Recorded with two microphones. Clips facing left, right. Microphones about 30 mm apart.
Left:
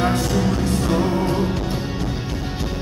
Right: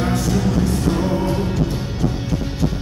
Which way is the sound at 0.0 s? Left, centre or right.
Left.